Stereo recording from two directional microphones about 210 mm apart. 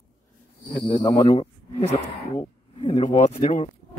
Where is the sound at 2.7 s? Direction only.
30° left (ahead or behind).